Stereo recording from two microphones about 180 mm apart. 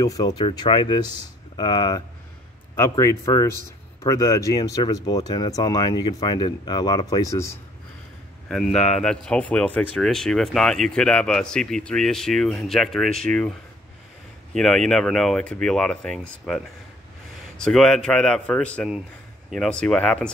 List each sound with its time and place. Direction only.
0.0 s a man's voice: 20° left (ahead or behind)
8.5 s speech: 5° left (ahead or behind)